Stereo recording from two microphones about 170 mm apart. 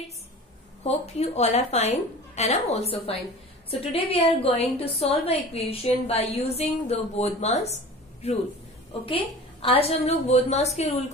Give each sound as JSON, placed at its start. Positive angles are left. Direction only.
{"t": 0.8, "sound": "a woman's voice", "side_deg": 40}